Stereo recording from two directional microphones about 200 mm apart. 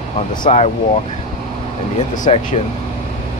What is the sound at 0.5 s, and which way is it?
Speech, 35° left (ahead or behind).